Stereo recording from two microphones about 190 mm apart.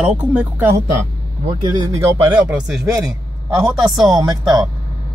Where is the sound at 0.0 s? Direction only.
5° right (ahead or behind).